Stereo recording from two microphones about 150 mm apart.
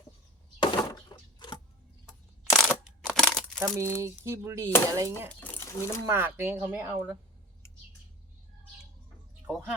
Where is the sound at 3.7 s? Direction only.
15° right (ahead or behind).